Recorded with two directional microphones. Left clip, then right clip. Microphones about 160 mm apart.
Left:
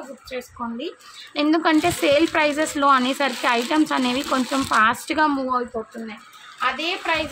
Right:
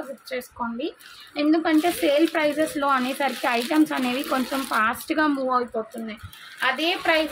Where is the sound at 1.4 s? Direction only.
20° left (ahead or behind).